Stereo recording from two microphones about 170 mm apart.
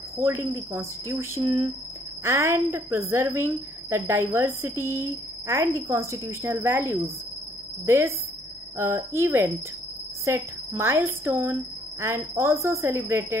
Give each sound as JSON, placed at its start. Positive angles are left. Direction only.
{"t": 0.2, "sound": "a woman's voice", "side_deg": -15}